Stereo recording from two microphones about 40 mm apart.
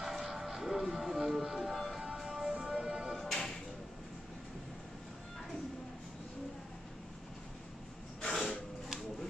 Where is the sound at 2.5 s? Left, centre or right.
Right.